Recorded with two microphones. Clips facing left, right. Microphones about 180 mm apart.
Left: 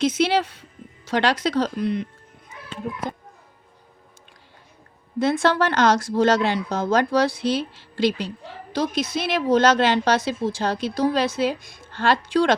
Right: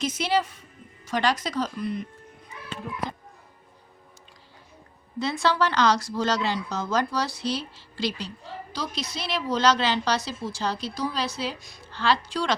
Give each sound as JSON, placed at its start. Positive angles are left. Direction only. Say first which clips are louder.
{"t": 0.0, "sound": "speech", "louder": "left 5 dB", "side_deg": 65}
{"t": 5.2, "sound": "speech", "louder": "left 5 dB", "side_deg": 50}